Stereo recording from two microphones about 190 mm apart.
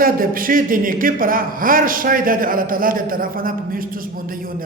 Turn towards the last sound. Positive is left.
turn(degrees=-50)  # may be behind; listen again after turning